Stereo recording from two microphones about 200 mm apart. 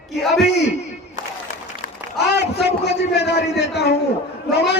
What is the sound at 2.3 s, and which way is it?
A man's voice, 55° left (ahead or behind).